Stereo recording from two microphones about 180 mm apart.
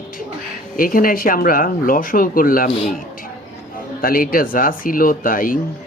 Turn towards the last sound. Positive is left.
turn(degrees=50)  # may be behind; listen again after turning